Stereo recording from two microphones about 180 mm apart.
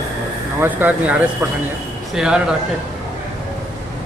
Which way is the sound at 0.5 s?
10° right (ahead or behind).